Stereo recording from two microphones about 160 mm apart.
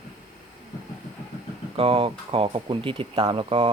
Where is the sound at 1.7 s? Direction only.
35° right (ahead or behind).